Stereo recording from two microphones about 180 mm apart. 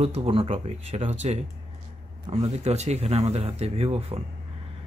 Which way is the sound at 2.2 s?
35° right (ahead or behind).